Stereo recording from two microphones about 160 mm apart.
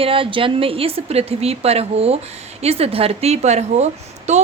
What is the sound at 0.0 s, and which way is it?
A woman's voice, 35° right (ahead or behind).